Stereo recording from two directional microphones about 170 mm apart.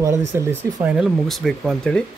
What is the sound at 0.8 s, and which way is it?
Speech, 5° right (ahead or behind).